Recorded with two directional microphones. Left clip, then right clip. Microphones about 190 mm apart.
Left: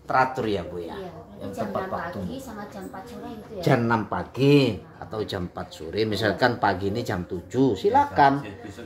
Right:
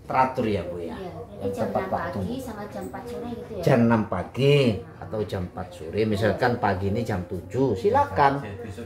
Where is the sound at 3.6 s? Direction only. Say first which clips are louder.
Right 1 dB; 45° left (ahead or behind).